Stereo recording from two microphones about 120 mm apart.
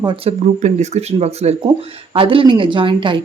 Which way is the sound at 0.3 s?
65° right (ahead or behind).